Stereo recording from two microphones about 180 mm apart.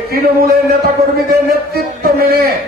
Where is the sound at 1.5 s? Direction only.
55° right (ahead or behind).